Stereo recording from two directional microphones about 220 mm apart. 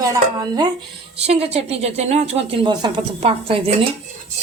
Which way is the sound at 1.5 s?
30° right (ahead or behind).